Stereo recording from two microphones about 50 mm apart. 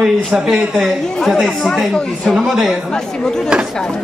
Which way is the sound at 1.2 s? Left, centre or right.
Centre.